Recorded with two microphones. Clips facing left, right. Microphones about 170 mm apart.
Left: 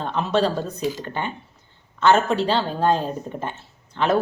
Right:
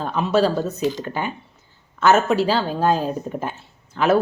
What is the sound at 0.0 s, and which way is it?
Speech, 5° right (ahead or behind).